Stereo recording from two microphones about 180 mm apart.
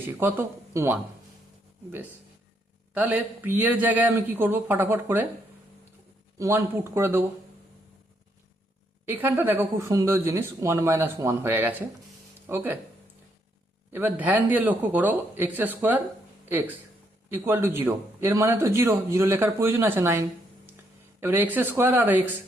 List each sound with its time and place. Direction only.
0.2 s a man's voice: 10° right (ahead or behind)
2.9 s a man's voice: 10° right (ahead or behind)
6.4 s a man's voice: 15° right (ahead or behind)
9.0 s a man's voice: 10° right (ahead or behind)
13.9 s a man's voice: 10° right (ahead or behind)
17.2 s a man's voice: 10° right (ahead or behind)